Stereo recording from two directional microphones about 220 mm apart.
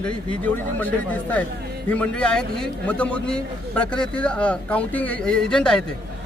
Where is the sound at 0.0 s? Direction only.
5° left (ahead or behind).